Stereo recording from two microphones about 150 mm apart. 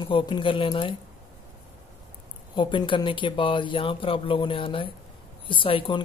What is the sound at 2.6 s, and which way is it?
Speech, 35° left (ahead or behind).